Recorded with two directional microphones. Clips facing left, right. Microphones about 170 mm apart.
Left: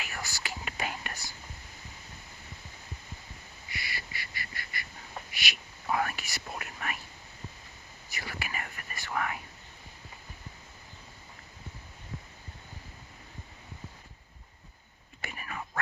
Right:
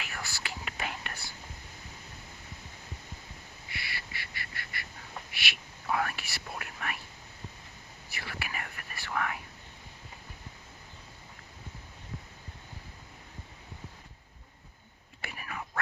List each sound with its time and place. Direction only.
0.0 s whispering: 5° left (ahead or behind)
3.7 s duck: centre (ahead or behind)
5.3 s whispering: centre (ahead or behind)
8.1 s whispering: centre (ahead or behind)
15.2 s whispering: 5° right (ahead or behind)